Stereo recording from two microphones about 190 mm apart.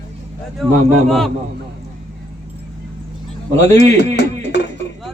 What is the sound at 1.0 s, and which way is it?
Speech, centre (ahead or behind).